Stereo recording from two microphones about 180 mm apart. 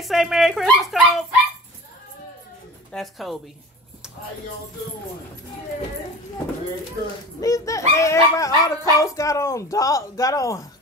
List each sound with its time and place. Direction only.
0.0 s dog: centre (ahead or behind)
2.9 s speech: centre (ahead or behind)
7.3 s speech: 20° left (ahead or behind)